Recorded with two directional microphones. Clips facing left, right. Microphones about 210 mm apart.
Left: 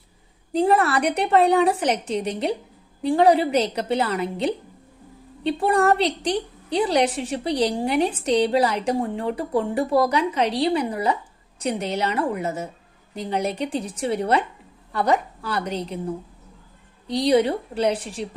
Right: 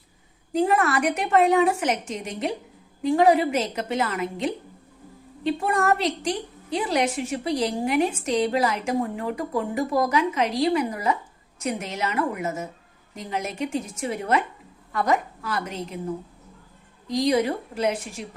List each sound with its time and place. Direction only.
0.5 s a woman's voice: 35° left (ahead or behind)
17.1 s a woman's voice: 35° left (ahead or behind)